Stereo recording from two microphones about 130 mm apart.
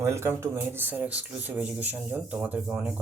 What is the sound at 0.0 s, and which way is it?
Speech, 20° right (ahead or behind).